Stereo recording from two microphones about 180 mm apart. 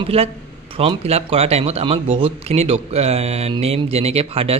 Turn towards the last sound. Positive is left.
turn(degrees=-35)  # may be behind; listen again after turning